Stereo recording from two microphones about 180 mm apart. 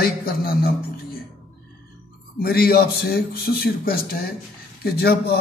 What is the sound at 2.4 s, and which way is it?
A man's voice, 60° left (ahead or behind).